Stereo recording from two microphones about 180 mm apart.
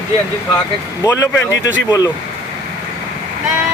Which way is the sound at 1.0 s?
15° left (ahead or behind).